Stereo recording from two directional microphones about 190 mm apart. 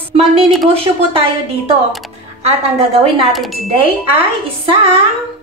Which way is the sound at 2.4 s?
35° right (ahead or behind).